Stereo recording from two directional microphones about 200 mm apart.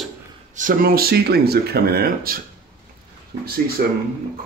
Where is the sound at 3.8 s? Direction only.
45° right (ahead or behind).